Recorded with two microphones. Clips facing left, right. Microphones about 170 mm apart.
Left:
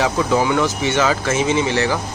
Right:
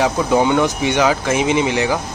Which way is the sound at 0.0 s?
20° right (ahead or behind).